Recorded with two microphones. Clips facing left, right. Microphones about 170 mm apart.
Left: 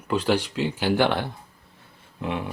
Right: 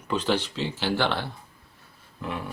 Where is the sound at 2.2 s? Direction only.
20° left (ahead or behind).